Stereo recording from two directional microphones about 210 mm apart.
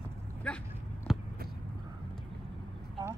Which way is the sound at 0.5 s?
5° left (ahead or behind).